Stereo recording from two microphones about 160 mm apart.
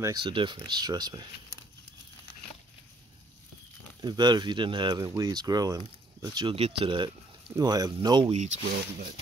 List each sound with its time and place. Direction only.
0.0 s speech: 30° right (ahead or behind)
4.0 s speech: 25° right (ahead or behind)
8.3 s speech: 45° right (ahead or behind)